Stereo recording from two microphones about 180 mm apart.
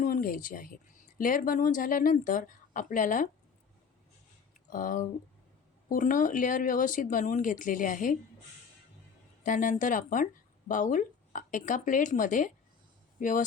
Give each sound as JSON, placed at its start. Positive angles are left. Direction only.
{"t": 0.0, "sound": "speech", "side_deg": 50}
{"t": 4.7, "sound": "speech", "side_deg": 50}
{"t": 9.4, "sound": "speech", "side_deg": 45}